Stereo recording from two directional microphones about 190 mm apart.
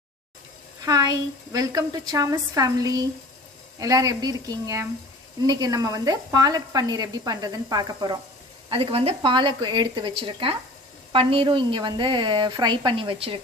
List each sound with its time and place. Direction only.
0.8 s speech: 20° right (ahead or behind)